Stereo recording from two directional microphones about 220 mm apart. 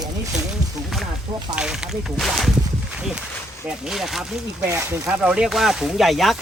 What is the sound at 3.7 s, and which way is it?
Speech, centre (ahead or behind).